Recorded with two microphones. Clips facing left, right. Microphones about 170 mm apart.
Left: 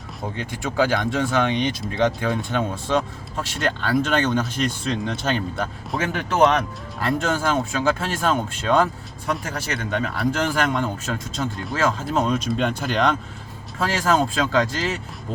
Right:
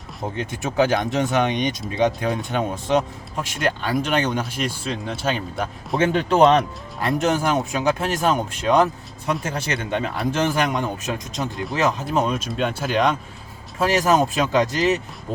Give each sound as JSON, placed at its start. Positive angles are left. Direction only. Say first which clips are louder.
{"t": 0.2, "sound": "speech", "louder": "right 2 dB", "side_deg": -20}
{"t": 6.0, "sound": "speech", "louder": "right 3 dB", "side_deg": -30}
{"t": 12.2, "sound": "speech", "louder": "left 1 dB", "side_deg": -5}